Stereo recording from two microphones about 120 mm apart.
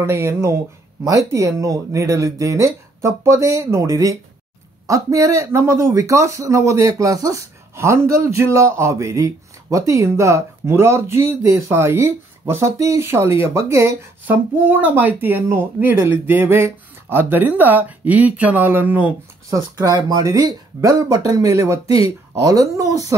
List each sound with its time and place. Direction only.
0.0 s speech: 20° right (ahead or behind)
19.5 s speech: 30° right (ahead or behind)